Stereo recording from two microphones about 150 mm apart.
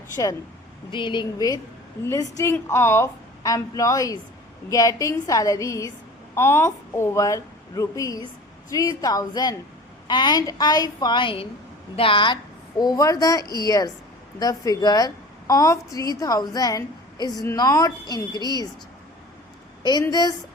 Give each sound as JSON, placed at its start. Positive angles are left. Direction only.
{"t": 0.9, "sound": "speech", "side_deg": 35}
{"t": 2.4, "sound": "a woman's voice", "side_deg": 20}
{"t": 12.8, "sound": "a woman's voice", "side_deg": 25}
{"t": 13.4, "sound": "a woman's voice", "side_deg": -30}
{"t": 13.7, "sound": "a woman's voice", "side_deg": 25}
{"t": 19.8, "sound": "a woman's voice", "side_deg": 25}